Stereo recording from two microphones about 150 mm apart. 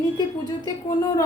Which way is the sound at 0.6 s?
20° left (ahead or behind).